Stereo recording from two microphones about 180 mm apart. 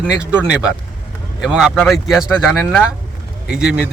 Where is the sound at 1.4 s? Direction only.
5° right (ahead or behind).